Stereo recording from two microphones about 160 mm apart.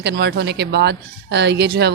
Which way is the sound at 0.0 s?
90° right.